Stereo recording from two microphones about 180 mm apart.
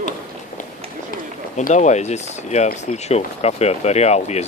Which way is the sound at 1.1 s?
45° left (ahead or behind).